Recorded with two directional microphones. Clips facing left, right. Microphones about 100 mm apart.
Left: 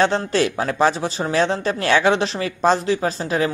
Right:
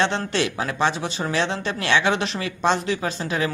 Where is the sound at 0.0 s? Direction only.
35° left (ahead or behind).